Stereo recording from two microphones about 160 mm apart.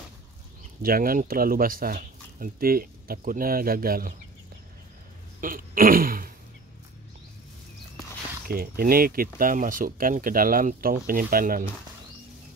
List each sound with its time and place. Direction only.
0.8 s speech: 65° right (ahead or behind)
5.4 s a sound: 60° right (ahead or behind)
8.5 s speech: 70° right (ahead or behind)